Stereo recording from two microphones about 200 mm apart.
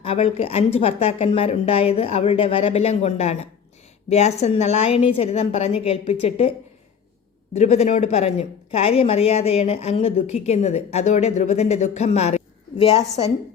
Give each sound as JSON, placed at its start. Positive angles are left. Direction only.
{"t": 0.0, "sound": "speech", "side_deg": 30}
{"t": 7.5, "sound": "speech", "side_deg": 30}